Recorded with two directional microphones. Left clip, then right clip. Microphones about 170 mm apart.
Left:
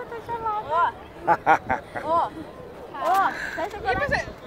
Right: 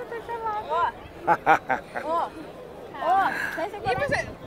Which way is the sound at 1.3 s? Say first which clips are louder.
Left 1 dB; 20° right (ahead or behind).